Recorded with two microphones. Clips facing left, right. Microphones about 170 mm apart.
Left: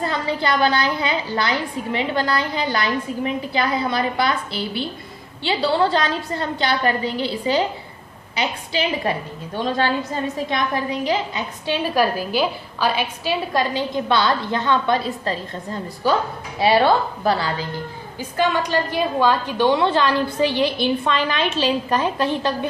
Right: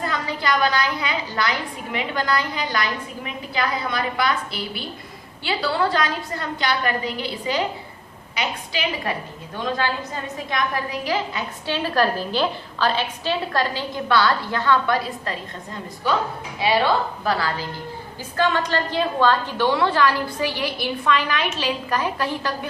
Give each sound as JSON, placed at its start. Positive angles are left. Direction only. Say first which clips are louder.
{"t": 0.0, "sound": "a woman's voice", "louder": "left 3 dB", "side_deg": 30}
{"t": 18.3, "sound": "a woman's voice", "louder": "left 1 dB", "side_deg": 15}